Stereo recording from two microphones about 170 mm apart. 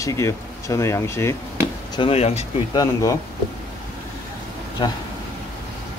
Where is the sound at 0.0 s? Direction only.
20° left (ahead or behind).